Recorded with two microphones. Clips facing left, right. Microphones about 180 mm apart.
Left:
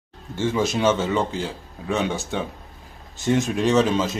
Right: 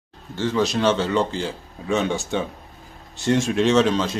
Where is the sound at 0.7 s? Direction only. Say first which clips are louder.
Even; 5° left (ahead or behind).